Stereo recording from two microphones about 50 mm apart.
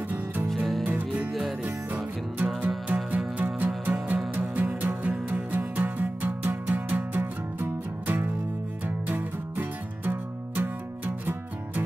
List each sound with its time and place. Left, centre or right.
2.3 s music: right